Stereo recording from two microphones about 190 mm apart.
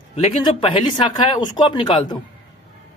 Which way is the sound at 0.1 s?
25° left (ahead or behind).